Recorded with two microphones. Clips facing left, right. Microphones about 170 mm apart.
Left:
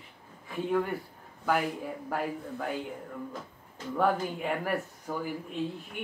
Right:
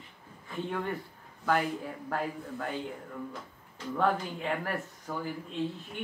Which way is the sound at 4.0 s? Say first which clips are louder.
Left 2 dB; 10° left (ahead or behind).